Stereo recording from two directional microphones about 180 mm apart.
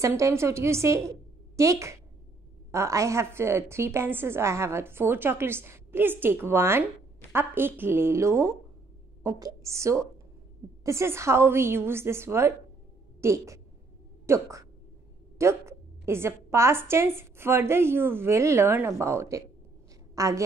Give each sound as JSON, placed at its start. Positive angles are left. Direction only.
{"t": 0.0, "sound": "a woman's voice", "side_deg": -15}